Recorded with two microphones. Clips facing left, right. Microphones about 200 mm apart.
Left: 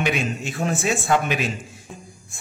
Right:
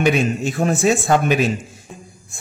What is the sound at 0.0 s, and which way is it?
A man's voice, 45° right (ahead or behind).